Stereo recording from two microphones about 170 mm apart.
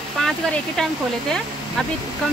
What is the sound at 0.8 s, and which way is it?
Speech, 5° left (ahead or behind).